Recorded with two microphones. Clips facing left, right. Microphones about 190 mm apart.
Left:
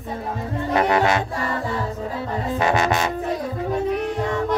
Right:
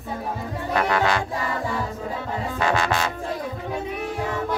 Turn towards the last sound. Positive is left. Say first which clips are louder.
# left 3 dB
turn(degrees=20)  # may be behind; listen again after turning